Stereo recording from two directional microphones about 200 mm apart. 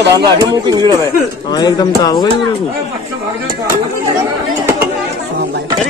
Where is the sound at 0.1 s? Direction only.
20° right (ahead or behind).